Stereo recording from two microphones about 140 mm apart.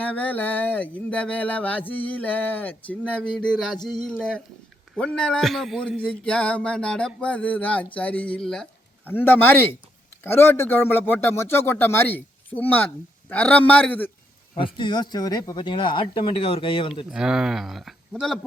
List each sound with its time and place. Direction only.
0.0 s a man's voice: 10° left (ahead or behind)
14.5 s speech: 35° left (ahead or behind)
17.1 s speech: 5° right (ahead or behind)